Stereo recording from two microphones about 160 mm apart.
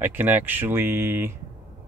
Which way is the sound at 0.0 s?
15° right (ahead or behind).